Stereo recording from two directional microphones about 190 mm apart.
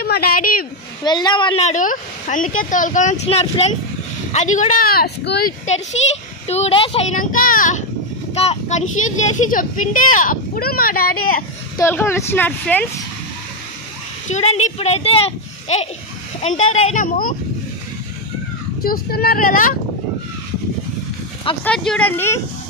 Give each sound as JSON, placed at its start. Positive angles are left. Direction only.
{"t": 0.0, "sound": "a sound", "side_deg": 55}
{"t": 1.0, "sound": "speech", "side_deg": 25}
{"t": 6.4, "sound": "speech", "side_deg": 35}
{"t": 11.8, "sound": "a woman's voice", "side_deg": 15}
{"t": 14.2, "sound": "speech", "side_deg": 35}
{"t": 18.8, "sound": "speech", "side_deg": 55}
{"t": 21.6, "sound": "a woman's voice", "side_deg": 5}